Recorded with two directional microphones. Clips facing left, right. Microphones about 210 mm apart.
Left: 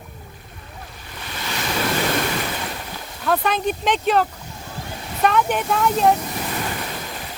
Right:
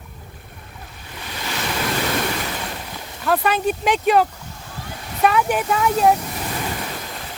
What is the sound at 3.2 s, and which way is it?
Speech, 5° right (ahead or behind).